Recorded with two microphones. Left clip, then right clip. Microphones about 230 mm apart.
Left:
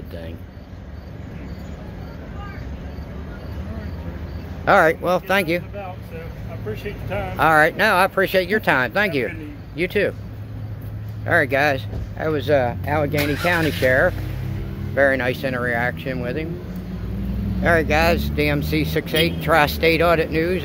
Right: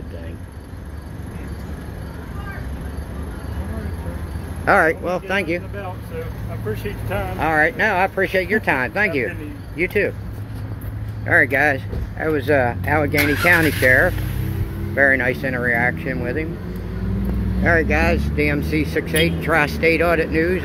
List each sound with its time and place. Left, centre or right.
4.6 s speech: left
6.7 s speech: centre
7.3 s speech: left
11.2 s speech: centre
17.6 s speech: centre